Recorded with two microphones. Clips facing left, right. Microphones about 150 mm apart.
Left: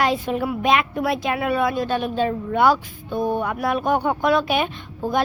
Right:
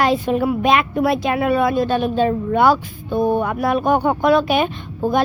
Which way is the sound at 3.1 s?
70° right (ahead or behind).